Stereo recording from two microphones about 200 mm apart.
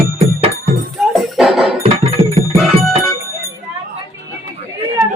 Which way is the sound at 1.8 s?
30° right (ahead or behind).